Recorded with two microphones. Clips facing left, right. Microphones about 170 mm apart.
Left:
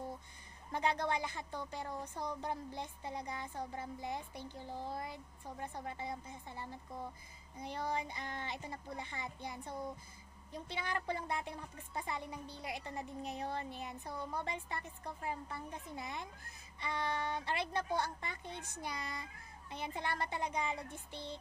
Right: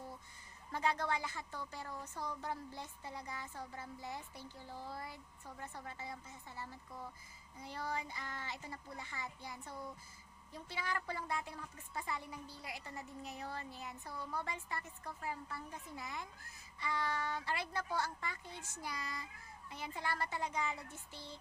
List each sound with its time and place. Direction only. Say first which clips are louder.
0.7 s speech: left 2 dB; 20° left (ahead or behind)